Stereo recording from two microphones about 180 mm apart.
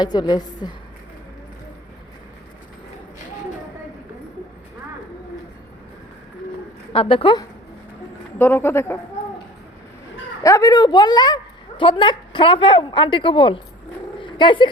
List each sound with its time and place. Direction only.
0.0 s a woman's voice: 25° left (ahead or behind)
6.9 s a woman's voice: 30° left (ahead or behind)
8.4 s a man's voice: 10° left (ahead or behind)
10.4 s a woman's voice: 15° left (ahead or behind)
14.2 s dog: 25° left (ahead or behind)